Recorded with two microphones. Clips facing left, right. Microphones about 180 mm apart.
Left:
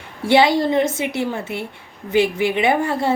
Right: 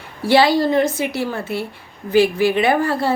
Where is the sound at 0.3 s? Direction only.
20° left (ahead or behind).